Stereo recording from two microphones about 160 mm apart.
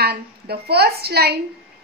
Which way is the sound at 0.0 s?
85° right.